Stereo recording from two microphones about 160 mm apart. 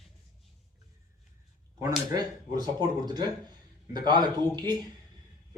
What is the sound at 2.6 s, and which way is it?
Speech, 25° right (ahead or behind).